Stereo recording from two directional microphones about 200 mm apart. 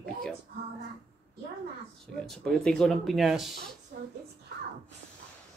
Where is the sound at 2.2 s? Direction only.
Centre (ahead or behind).